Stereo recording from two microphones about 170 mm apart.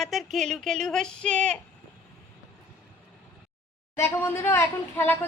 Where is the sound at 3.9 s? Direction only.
15° left (ahead or behind).